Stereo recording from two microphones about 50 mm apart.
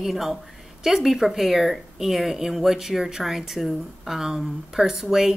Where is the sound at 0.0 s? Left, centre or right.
Centre.